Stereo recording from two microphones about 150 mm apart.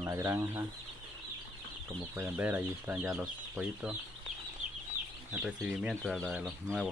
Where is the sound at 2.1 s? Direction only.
10° right (ahead or behind).